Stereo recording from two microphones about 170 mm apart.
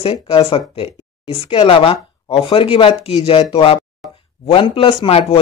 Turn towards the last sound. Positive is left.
turn(degrees=35)  # may be behind; listen again after turning